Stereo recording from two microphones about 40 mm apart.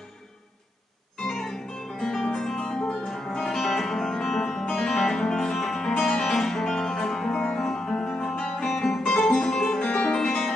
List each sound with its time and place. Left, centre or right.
1.1 s music: centre
8.6 s music: centre
9.8 s music: left
10.1 s music: centre